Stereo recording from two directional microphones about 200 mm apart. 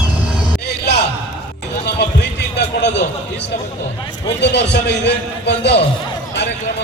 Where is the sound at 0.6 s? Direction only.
55° left (ahead or behind).